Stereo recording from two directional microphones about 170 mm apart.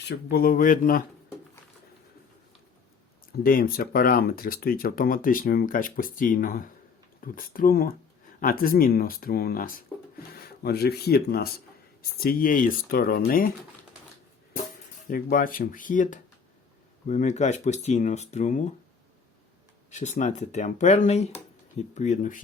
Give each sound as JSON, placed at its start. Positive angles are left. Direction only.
{"t": 0.1, "sound": "speech", "side_deg": 70}
{"t": 3.4, "sound": "speech", "side_deg": 60}
{"t": 15.0, "sound": "speech", "side_deg": 55}
{"t": 19.9, "sound": "speech", "side_deg": 45}